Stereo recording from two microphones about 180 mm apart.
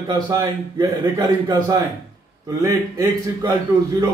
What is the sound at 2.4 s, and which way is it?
A man's voice, 15° right (ahead or behind).